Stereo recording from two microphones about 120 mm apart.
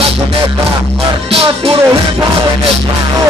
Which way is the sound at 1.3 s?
55° right (ahead or behind).